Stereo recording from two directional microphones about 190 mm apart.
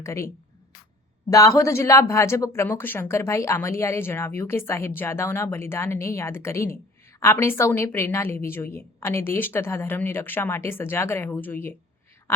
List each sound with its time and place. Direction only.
0.0 s a woman's voice: 15° left (ahead or behind)
1.3 s speech: 15° left (ahead or behind)